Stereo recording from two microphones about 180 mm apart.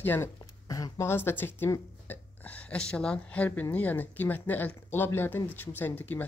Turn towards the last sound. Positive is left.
turn(degrees=10)  # may be behind; listen again after turning